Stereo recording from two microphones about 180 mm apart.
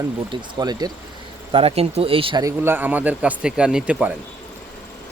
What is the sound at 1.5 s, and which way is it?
Speech, 35° right (ahead or behind).